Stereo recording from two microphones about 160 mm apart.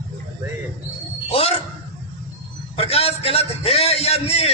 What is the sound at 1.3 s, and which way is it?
Speech, 35° left (ahead or behind).